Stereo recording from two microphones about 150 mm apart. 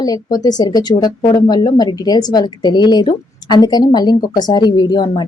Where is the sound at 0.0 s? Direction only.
25° left (ahead or behind).